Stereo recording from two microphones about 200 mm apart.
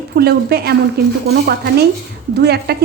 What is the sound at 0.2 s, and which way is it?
A woman's voice, 50° right (ahead or behind).